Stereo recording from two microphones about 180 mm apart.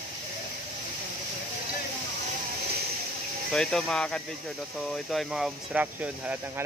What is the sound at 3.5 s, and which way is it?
Speech, 5° left (ahead or behind).